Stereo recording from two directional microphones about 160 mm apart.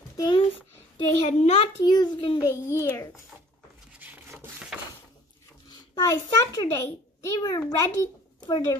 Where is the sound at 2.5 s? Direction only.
15° left (ahead or behind).